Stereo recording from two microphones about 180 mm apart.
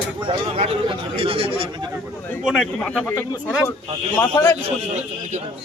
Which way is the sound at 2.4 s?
5° right (ahead or behind).